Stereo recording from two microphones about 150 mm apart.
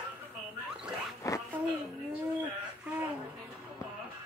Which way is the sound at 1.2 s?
20° left (ahead or behind).